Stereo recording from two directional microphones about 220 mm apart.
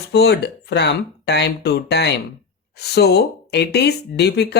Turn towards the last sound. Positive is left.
turn(degrees=50)  # may be behind; listen again after turning